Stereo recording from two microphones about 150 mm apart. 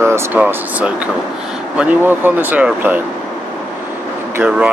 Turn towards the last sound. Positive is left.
turn(degrees=-10)  # may be behind; listen again after turning